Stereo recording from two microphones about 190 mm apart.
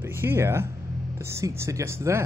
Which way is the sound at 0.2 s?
15° right (ahead or behind).